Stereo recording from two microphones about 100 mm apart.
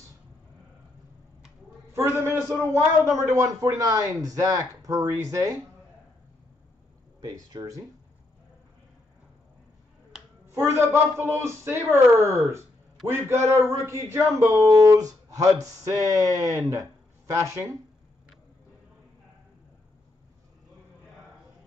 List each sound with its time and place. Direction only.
2.0 s a man's voice: 25° right (ahead or behind)
7.2 s a man's voice: 40° right (ahead or behind)
10.4 s a man's voice: 25° right (ahead or behind)